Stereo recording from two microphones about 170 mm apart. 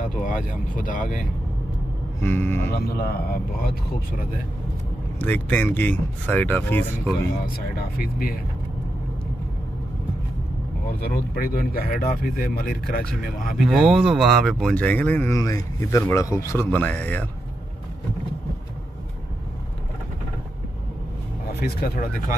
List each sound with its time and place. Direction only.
0.1 s speech: 50° left (ahead or behind)
2.1 s speech: 15° left (ahead or behind)
2.7 s speech: 65° left (ahead or behind)
5.2 s speech: 10° left (ahead or behind)
7.5 s speech: 60° left (ahead or behind)
10.9 s speech: 65° left (ahead or behind)
13.7 s speech: 5° right (ahead or behind)
21.5 s speech: 65° left (ahead or behind)